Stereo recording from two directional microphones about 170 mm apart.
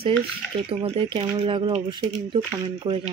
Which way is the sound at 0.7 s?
30° right (ahead or behind).